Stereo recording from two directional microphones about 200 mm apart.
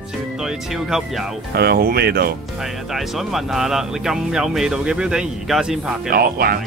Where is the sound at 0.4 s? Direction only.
Centre (ahead or behind).